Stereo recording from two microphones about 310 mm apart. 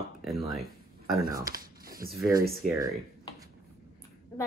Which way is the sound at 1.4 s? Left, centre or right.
Right.